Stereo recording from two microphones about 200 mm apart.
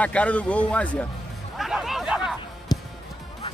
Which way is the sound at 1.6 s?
Centre (ahead or behind).